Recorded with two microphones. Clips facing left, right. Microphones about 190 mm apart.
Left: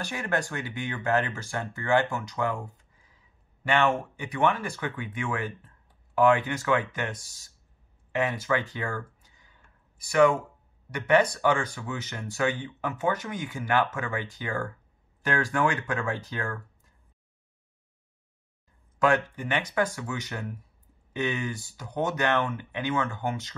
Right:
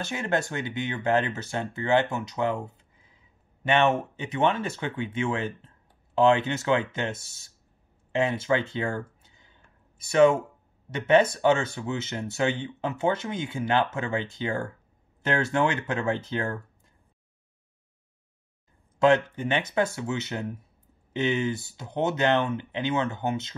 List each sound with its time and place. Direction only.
0.0 s speech: 20° right (ahead or behind)
8.1 s a sound: 25° right (ahead or behind)
10.9 s speech: 25° right (ahead or behind)
18.9 s speech: 25° right (ahead or behind)